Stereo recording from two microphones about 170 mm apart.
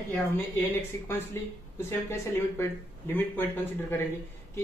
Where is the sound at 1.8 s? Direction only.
15° left (ahead or behind).